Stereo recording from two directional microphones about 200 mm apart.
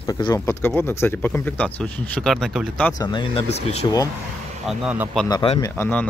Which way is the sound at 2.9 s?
20° left (ahead or behind).